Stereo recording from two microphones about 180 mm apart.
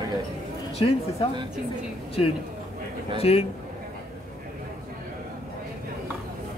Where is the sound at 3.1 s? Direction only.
35° left (ahead or behind).